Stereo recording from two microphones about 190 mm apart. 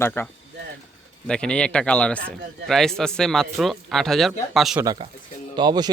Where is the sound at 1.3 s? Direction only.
5° left (ahead or behind).